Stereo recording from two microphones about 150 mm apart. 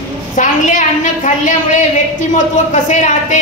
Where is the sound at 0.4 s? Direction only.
55° left (ahead or behind).